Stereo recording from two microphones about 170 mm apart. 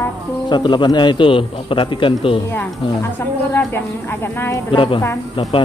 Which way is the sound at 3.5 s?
10° left (ahead or behind).